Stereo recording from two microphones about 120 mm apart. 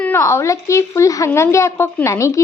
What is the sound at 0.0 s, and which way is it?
A woman's voice, 20° left (ahead or behind).